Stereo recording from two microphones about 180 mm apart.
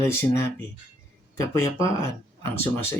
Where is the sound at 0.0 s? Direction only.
15° left (ahead or behind).